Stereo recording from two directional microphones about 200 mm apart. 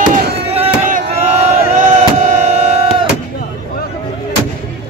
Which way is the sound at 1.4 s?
35° right (ahead or behind).